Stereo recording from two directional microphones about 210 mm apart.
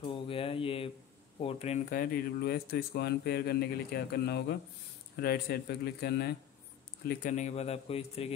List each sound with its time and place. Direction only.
0.0 s a sound: 25° left (ahead or behind)
1.9 s speech: 45° left (ahead or behind)
7.1 s speech: 35° left (ahead or behind)